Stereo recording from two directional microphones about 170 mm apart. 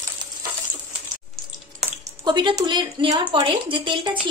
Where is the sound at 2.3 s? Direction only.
25° right (ahead or behind).